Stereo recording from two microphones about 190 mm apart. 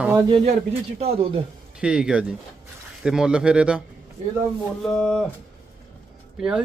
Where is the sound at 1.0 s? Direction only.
30° right (ahead or behind).